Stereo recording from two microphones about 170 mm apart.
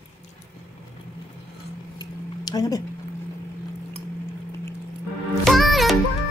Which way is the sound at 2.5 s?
20° left (ahead or behind).